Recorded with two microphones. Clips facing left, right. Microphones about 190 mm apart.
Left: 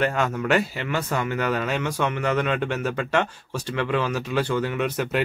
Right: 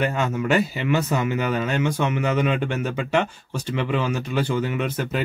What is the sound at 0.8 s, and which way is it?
Speech, 10° right (ahead or behind).